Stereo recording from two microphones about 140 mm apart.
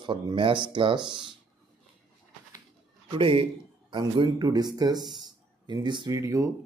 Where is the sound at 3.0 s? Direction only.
40° right (ahead or behind); by 6.5 s 20° right (ahead or behind).